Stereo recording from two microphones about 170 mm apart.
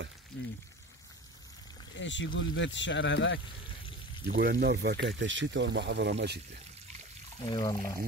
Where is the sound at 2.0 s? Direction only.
90° left.